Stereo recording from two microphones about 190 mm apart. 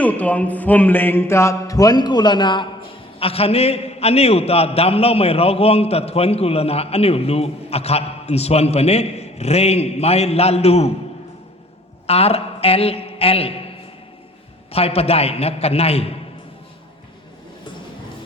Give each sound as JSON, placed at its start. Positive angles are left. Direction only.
{"t": 0.0, "sound": "music", "side_deg": 10}
{"t": 3.2, "sound": "a man's voice", "side_deg": 30}
{"t": 12.0, "sound": "a man's voice", "side_deg": 30}
{"t": 14.7, "sound": "a man's voice", "side_deg": 30}